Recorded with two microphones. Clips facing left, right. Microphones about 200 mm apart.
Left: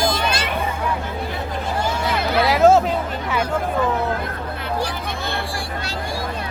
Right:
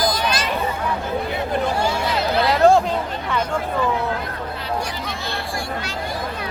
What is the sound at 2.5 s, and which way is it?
Chatter, 5° left (ahead or behind).